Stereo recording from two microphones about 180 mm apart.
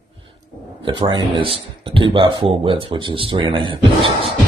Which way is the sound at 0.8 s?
30° right (ahead or behind).